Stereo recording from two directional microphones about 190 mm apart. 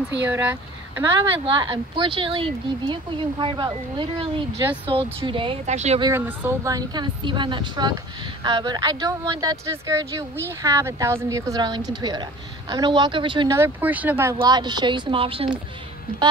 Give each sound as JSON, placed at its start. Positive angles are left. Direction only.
{"t": 0.3, "sound": "speech", "side_deg": -10}
{"t": 1.4, "sound": "speech", "side_deg": -25}
{"t": 6.0, "sound": "speech", "side_deg": -15}
{"t": 13.6, "sound": "speech", "side_deg": -10}
{"t": 14.4, "sound": "speech", "side_deg": -20}